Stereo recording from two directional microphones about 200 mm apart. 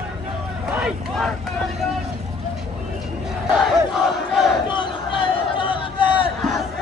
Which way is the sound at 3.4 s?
Centre (ahead or behind).